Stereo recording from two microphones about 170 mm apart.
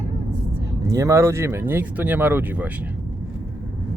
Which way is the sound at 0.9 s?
20° right (ahead or behind).